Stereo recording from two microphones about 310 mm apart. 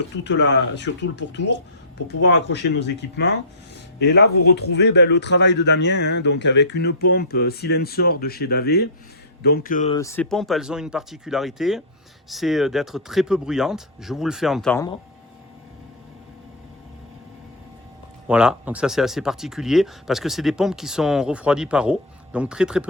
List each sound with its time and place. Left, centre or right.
0.3 s speech: left
2.2 s speech: left
9.9 s speech: centre
18.3 s speech: centre